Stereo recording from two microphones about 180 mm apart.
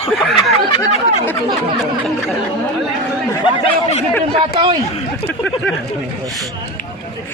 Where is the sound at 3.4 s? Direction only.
35° left (ahead or behind).